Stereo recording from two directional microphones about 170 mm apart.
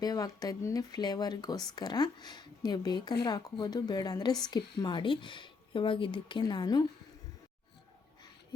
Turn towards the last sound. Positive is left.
turn(degrees=25)  # may be behind; listen again after turning